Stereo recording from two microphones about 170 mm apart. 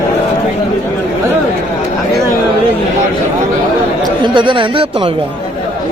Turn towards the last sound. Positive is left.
turn(degrees=-30)  # may be behind; listen again after turning